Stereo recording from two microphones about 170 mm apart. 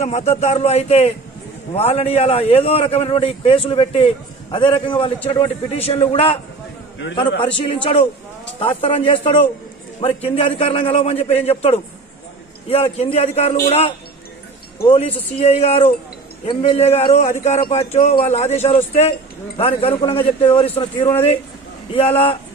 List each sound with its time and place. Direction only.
0.0 s a man's voice: 40° left (ahead or behind)
7.6 s a man's voice: 35° left (ahead or behind)
15.0 s a man's voice: 35° left (ahead or behind)